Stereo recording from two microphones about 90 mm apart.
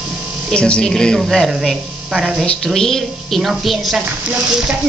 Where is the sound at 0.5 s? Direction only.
10° left (ahead or behind).